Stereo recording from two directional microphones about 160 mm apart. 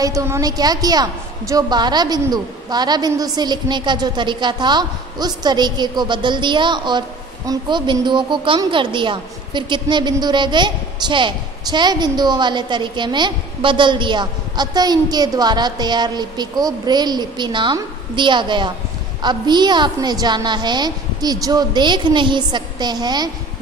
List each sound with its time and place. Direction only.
0.0 s a woman's voice: 20° right (ahead or behind)